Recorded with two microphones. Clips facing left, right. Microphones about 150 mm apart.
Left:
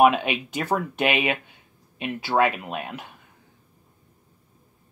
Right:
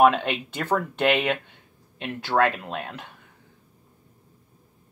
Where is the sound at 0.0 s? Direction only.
10° left (ahead or behind).